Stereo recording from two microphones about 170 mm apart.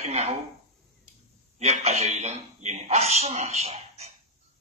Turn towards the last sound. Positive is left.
turn(degrees=-40)  # may be behind; listen again after turning